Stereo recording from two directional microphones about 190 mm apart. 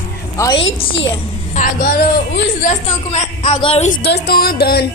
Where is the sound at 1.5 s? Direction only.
45° left (ahead or behind).